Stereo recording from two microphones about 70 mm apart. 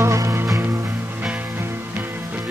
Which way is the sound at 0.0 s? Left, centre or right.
Right.